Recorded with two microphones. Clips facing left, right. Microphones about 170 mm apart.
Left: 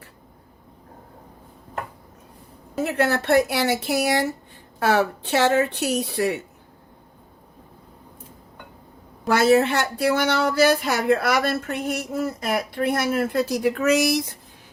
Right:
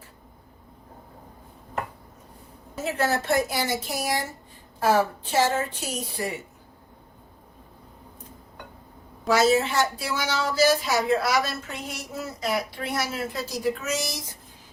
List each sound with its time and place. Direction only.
2.7 s a woman's voice: 60° left (ahead or behind)
9.2 s speech: 60° left (ahead or behind)